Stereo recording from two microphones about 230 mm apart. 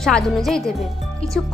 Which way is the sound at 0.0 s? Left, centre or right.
Centre.